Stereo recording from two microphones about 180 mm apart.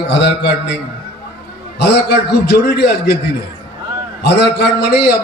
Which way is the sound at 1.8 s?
65° left (ahead or behind).